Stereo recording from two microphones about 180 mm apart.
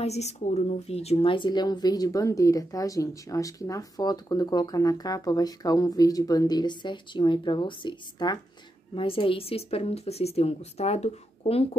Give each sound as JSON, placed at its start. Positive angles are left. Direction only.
{"t": 0.0, "sound": "speech", "side_deg": 35}